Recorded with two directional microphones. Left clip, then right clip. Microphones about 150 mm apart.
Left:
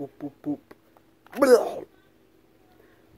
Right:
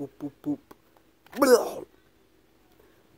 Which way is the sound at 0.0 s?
25° right (ahead or behind).